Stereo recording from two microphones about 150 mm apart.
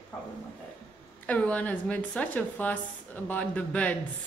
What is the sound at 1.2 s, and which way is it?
Speech, 10° left (ahead or behind).